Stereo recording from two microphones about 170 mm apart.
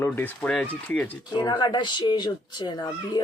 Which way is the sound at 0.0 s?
10° left (ahead or behind).